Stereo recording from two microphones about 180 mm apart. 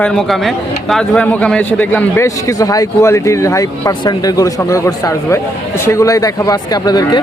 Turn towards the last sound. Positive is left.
turn(degrees=20)  # may be behind; listen again after turning